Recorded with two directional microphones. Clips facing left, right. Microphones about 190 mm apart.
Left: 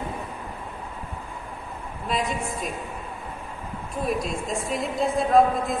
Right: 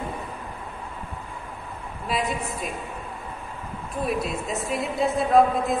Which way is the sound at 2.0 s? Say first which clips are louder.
Even; centre (ahead or behind).